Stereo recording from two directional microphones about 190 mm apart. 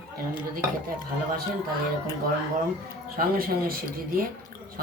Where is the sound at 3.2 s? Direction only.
50° right (ahead or behind).